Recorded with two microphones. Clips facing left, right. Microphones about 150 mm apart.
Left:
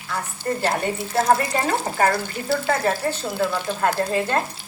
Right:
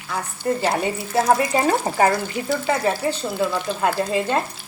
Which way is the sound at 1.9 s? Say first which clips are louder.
Right 4 dB; 20° right (ahead or behind).